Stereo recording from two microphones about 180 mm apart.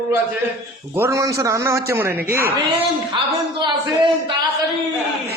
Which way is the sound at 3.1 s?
25° right (ahead or behind).